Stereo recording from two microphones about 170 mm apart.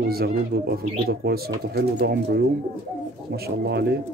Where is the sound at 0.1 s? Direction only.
65° right (ahead or behind).